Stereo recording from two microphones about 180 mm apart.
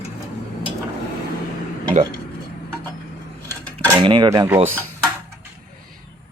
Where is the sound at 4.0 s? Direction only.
25° right (ahead or behind).